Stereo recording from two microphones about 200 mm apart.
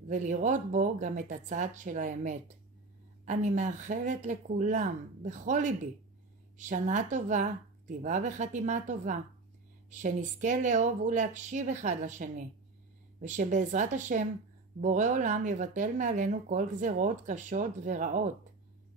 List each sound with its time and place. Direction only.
0.1 s speech: 40° right (ahead or behind)